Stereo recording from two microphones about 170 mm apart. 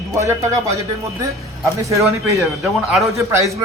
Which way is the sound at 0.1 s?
15° right (ahead or behind).